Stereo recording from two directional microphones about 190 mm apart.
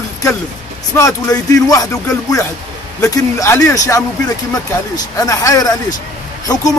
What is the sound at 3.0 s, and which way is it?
Speech, 15° left (ahead or behind).